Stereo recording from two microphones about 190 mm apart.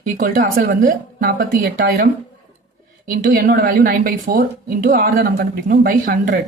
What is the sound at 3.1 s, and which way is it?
Speech, 50° right (ahead or behind).